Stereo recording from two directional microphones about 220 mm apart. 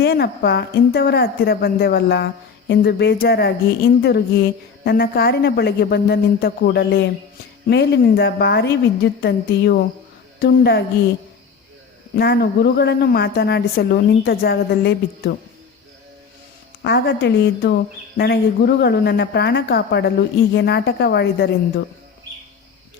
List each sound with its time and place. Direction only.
0.0 s a woman's voice: 50° left (ahead or behind)
12.1 s a woman's voice: 45° left (ahead or behind)
16.8 s a woman's voice: 50° left (ahead or behind)